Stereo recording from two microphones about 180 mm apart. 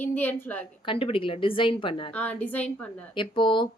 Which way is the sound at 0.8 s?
30° left (ahead or behind).